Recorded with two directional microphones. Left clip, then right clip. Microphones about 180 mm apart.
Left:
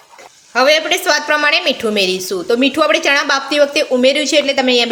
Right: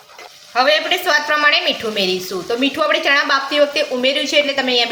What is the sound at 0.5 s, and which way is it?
A woman's voice, 50° left (ahead or behind).